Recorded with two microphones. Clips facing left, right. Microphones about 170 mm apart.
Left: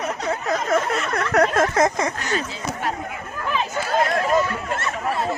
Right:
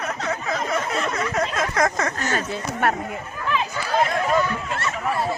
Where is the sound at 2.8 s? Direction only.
65° right (ahead or behind).